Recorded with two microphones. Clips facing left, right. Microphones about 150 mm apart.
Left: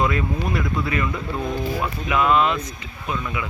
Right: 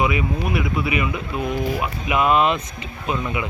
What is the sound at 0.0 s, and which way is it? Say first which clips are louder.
Speech: right 1 dB; 10° right (ahead or behind).